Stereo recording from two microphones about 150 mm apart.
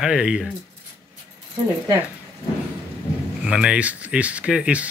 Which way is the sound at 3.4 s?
5° right (ahead or behind).